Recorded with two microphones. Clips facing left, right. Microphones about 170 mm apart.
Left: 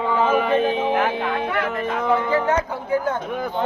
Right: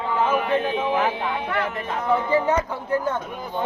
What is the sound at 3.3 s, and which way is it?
Speech, 65° left (ahead or behind).